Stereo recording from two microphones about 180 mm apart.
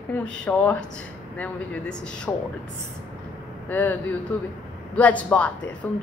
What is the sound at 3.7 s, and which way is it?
Speech, 10° left (ahead or behind).